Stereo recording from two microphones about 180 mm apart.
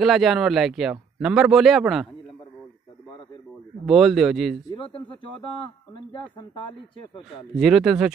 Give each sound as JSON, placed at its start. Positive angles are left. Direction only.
{"t": 0.0, "sound": "a man's voice", "side_deg": 0}
{"t": 3.8, "sound": "a man's voice", "side_deg": 0}
{"t": 4.7, "sound": "speech", "side_deg": 30}
{"t": 7.5, "sound": "a man's voice", "side_deg": 0}